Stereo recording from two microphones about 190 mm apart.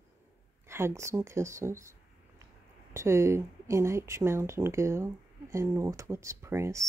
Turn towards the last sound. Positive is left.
turn(degrees=-15)  # may be behind; listen again after turning